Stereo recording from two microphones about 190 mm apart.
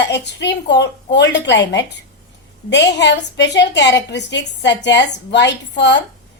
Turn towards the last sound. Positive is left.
turn(degrees=65)  # may be behind; listen again after turning